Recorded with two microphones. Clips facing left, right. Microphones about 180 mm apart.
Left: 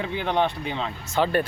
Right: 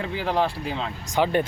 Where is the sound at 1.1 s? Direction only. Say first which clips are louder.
Right 1 dB; 15° right (ahead or behind).